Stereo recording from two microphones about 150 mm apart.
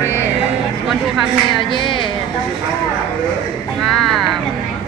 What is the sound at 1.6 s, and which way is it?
Speech, 35° left (ahead or behind).